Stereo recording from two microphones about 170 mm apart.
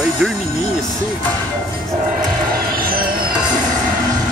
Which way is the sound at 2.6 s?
60° right (ahead or behind).